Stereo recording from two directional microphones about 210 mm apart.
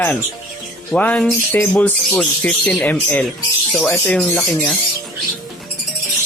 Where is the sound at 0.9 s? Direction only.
5° left (ahead or behind).